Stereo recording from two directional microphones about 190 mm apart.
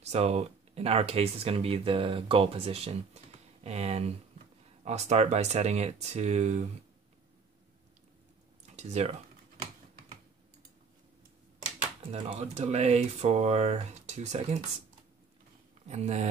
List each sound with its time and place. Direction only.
0.0 s speech: 35° right (ahead or behind)
8.7 s speech: 35° right (ahead or behind)
12.1 s speech: 35° right (ahead or behind)
15.9 s speech: 35° right (ahead or behind)